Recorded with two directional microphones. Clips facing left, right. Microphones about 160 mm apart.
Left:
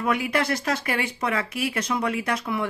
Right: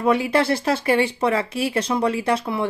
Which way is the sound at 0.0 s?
30° right (ahead or behind).